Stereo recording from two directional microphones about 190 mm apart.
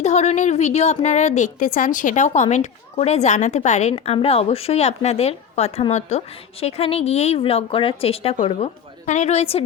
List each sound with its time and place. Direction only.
0.0 s a woman's voice: 35° left (ahead or behind)